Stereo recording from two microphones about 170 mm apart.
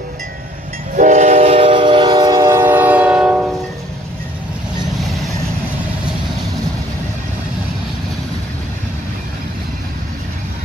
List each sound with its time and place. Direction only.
0.9 s train: 45° right (ahead or behind); by 3.4 s 5° right (ahead or behind)